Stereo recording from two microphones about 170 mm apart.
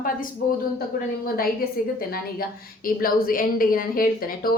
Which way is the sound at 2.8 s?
55° left (ahead or behind).